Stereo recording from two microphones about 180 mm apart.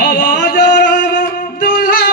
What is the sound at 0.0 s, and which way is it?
Music, 60° left (ahead or behind).